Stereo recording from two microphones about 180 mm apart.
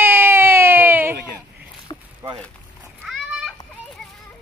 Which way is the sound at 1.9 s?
25° left (ahead or behind).